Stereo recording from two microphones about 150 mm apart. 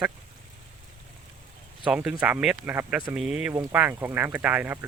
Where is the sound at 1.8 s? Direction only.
5° right (ahead or behind).